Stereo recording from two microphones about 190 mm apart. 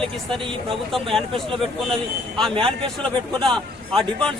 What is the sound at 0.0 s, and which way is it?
A man's voice, 5° left (ahead or behind).